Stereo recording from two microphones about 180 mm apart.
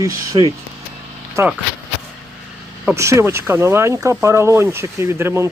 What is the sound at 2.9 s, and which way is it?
Speech, 15° right (ahead or behind).